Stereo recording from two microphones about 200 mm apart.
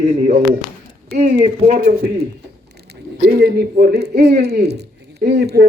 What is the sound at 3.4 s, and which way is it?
Speech, 50° right (ahead or behind).